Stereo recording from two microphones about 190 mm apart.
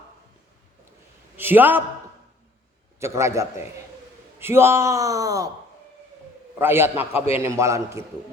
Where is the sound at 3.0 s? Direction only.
15° right (ahead or behind).